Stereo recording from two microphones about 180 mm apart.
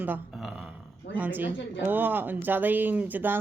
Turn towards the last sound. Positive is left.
turn(degrees=-10)  # may be behind; listen again after turning